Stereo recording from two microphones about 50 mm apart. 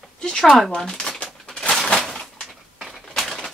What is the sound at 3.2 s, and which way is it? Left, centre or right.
Bird, centre.